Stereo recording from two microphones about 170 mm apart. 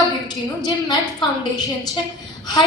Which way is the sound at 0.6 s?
25° left (ahead or behind).